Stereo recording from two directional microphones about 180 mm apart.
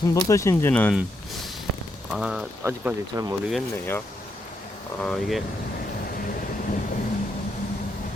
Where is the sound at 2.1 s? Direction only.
5° right (ahead or behind).